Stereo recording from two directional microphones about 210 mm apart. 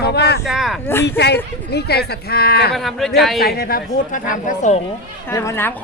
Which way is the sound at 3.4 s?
45° left (ahead or behind).